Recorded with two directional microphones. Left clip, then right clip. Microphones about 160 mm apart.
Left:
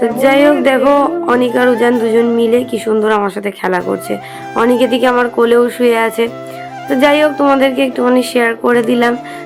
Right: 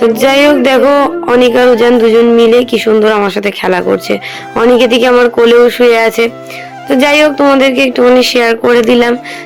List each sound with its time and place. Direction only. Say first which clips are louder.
0.2 s speech: left 1 dB; 20° right (ahead or behind)